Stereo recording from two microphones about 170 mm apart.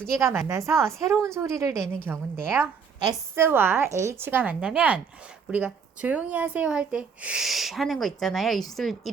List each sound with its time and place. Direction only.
0.0 s a woman's voice: 15° right (ahead or behind); by 9.1 s centre (ahead or behind)